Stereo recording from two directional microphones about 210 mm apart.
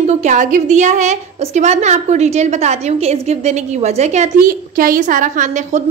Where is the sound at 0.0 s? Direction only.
30° right (ahead or behind).